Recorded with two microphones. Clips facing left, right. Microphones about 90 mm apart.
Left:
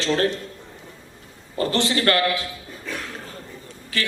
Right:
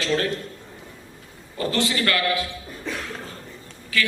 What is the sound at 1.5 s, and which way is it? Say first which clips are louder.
Speech: left 2 dB; 35° left (ahead or behind).